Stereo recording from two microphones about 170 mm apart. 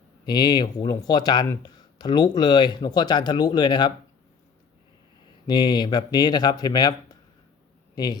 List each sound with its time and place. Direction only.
0.3 s speech: 25° left (ahead or behind)
5.5 s speech: 25° left (ahead or behind)